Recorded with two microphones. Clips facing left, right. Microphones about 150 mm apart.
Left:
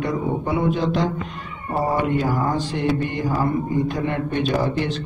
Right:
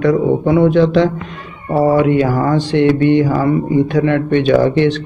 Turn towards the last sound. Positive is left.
turn(degrees=-80)